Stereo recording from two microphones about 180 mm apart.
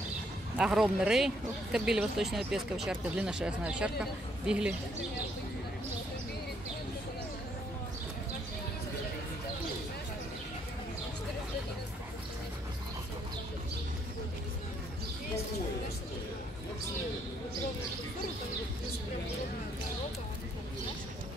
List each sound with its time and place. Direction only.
0.6 s a woman's voice: 5° right (ahead or behind)